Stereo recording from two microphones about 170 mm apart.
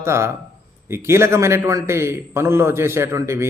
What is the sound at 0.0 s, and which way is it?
A man's voice, 15° right (ahead or behind).